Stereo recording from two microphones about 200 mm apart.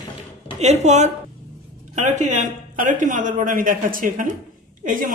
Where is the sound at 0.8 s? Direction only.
35° right (ahead or behind).